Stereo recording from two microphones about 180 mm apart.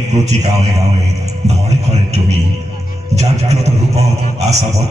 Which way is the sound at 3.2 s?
35° right (ahead or behind).